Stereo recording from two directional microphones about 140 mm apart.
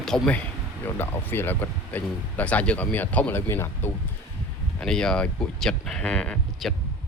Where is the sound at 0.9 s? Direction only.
15° left (ahead or behind).